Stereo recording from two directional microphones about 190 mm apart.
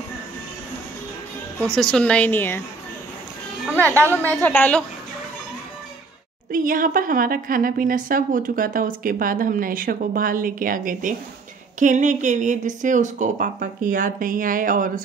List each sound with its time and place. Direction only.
1.6 s a woman's voice: 5° left (ahead or behind)
3.7 s a woman's voice: 10° left (ahead or behind)
6.5 s a woman's voice: 45° right (ahead or behind)